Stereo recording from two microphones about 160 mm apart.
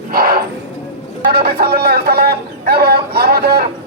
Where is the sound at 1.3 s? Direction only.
80° right.